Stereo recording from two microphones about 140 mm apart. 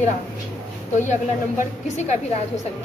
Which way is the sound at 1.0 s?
60° left (ahead or behind).